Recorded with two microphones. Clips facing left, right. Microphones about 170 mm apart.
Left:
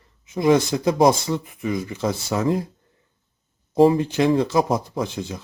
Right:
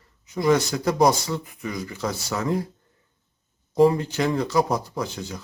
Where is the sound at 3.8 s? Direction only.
25° left (ahead or behind).